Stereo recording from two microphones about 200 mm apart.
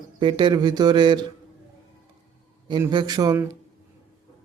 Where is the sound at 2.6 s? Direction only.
20° right (ahead or behind).